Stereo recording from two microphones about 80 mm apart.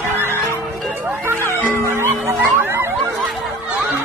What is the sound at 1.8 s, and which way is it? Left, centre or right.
Music, right.